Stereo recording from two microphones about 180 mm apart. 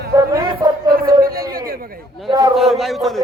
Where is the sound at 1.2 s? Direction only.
55° right (ahead or behind).